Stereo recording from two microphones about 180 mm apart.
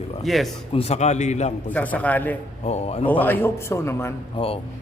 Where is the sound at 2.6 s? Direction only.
35° left (ahead or behind).